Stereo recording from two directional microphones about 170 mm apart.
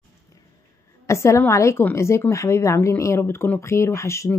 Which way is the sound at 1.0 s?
15° left (ahead or behind).